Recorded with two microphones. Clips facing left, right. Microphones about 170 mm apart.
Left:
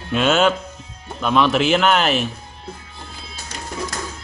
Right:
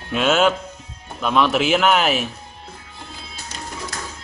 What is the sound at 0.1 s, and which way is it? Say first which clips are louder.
A man's voice: left 1 dB; 5° right (ahead or behind).